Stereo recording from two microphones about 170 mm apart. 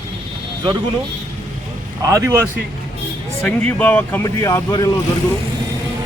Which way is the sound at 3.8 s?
10° left (ahead or behind).